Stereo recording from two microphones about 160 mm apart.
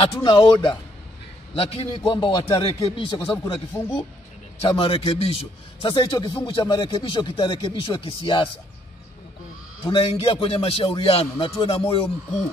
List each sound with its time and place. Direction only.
0.1 s a man's voice: 30° left (ahead or behind)
2.8 s a man's voice: 20° left (ahead or behind)
4.6 s a man's voice: 35° left (ahead or behind)
9.8 s a man's voice: 30° left (ahead or behind)